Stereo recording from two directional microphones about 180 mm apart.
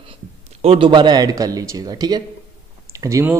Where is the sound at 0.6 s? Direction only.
30° right (ahead or behind).